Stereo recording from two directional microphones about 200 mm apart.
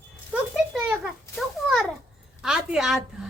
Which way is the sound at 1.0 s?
Centre (ahead or behind).